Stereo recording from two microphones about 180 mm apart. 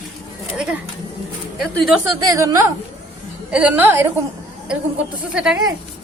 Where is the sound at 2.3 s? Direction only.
15° right (ahead or behind).